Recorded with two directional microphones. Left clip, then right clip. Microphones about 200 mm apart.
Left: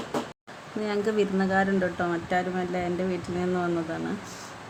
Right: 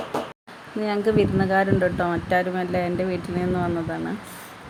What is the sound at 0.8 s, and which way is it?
Speech, 10° right (ahead or behind).